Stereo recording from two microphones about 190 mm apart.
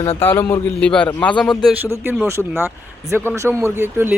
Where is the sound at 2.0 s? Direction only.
10° right (ahead or behind).